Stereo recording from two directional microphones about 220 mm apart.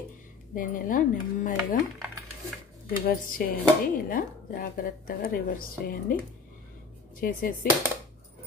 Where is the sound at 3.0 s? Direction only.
40° left (ahead or behind).